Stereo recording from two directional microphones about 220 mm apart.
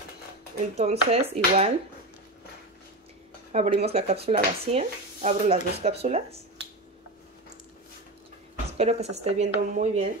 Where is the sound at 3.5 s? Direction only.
30° right (ahead or behind).